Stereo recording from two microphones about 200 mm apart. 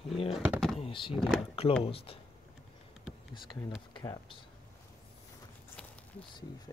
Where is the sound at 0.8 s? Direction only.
25° left (ahead or behind).